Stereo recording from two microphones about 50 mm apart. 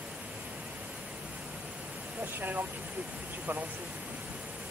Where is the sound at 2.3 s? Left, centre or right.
Right.